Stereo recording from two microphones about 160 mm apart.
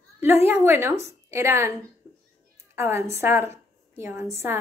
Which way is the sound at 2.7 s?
15° right (ahead or behind).